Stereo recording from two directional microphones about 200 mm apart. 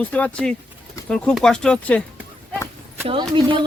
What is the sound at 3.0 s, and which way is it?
Speech, 25° right (ahead or behind).